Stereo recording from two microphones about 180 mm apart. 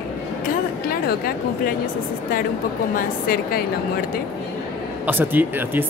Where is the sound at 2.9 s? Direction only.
55° left (ahead or behind).